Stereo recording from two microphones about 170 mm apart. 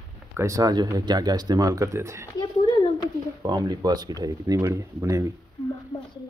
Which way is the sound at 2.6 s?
25° left (ahead or behind).